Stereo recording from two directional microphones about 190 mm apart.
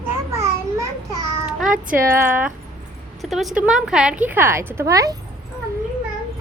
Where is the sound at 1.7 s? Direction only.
45° right (ahead or behind).